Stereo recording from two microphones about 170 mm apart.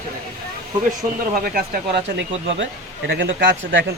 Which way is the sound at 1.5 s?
60° right (ahead or behind).